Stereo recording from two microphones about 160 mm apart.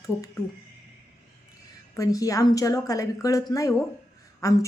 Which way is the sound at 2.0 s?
20° left (ahead or behind).